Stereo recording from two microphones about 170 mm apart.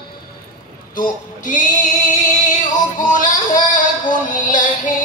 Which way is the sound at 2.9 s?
50° left (ahead or behind).